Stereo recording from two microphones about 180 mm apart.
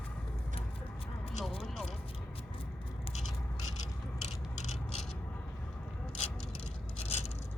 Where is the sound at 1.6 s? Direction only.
Centre (ahead or behind).